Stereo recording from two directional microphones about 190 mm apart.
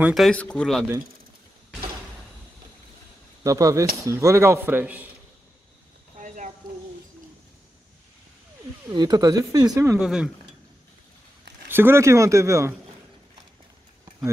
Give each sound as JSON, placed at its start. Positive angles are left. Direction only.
{"t": 0.0, "sound": "speech", "side_deg": 0}
{"t": 3.4, "sound": "speech", "side_deg": -15}
{"t": 6.1, "sound": "a sound", "side_deg": -40}
{"t": 8.9, "sound": "speech", "side_deg": -20}
{"t": 9.9, "sound": "speech", "side_deg": -5}
{"t": 11.7, "sound": "speech", "side_deg": -10}